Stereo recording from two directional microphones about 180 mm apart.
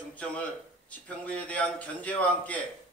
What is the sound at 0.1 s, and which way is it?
A man's voice, 5° left (ahead or behind).